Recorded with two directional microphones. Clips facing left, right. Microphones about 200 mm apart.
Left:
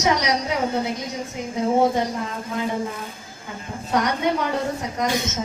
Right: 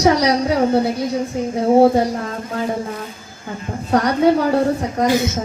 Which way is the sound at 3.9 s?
35° right (ahead or behind).